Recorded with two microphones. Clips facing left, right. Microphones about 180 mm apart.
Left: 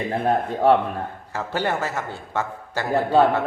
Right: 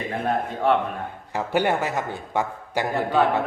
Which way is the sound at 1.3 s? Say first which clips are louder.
Right 3 dB; 15° right (ahead or behind).